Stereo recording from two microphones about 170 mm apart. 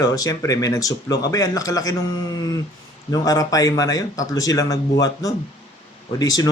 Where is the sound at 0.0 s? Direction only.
20° left (ahead or behind).